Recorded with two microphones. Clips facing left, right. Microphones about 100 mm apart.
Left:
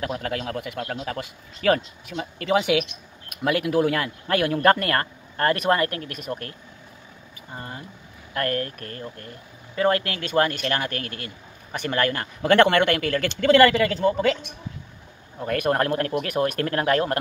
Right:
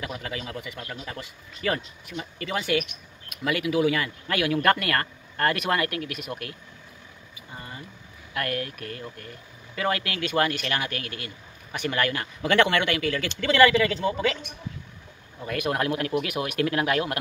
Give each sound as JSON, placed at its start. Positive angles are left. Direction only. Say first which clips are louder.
{"t": 0.0, "sound": "speech", "louder": "left 6 dB", "side_deg": 55}
{"t": 3.3, "sound": "speech", "louder": "left 3 dB", "side_deg": 50}
{"t": 7.5, "sound": "speech", "louder": "left 4 dB", "side_deg": 50}
{"t": 15.3, "sound": "speech", "louder": "left 5 dB", "side_deg": 45}